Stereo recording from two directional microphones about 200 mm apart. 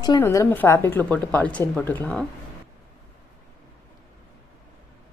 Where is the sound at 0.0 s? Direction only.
15° left (ahead or behind).